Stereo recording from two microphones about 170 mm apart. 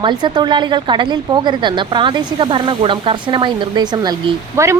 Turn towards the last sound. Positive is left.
turn(degrees=-15)  # may be behind; listen again after turning